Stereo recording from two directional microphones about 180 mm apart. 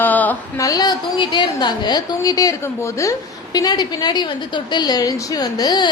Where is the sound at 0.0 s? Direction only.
10° left (ahead or behind).